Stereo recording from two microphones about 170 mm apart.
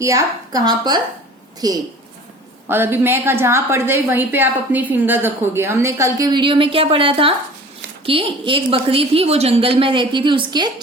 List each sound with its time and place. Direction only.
0.0 s a woman's voice: 20° right (ahead or behind)